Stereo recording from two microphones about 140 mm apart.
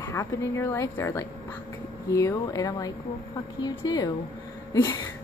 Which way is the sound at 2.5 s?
25° left (ahead or behind).